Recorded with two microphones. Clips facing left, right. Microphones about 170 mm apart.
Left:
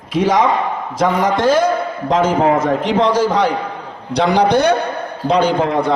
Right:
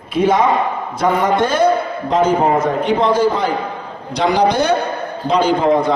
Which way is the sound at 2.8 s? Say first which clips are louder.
Even; 90° left.